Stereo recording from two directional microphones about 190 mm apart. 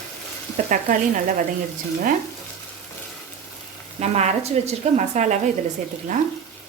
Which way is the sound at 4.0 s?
35° right (ahead or behind).